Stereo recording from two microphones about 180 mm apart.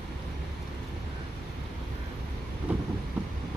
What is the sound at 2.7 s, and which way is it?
Vehicle, 10° right (ahead or behind).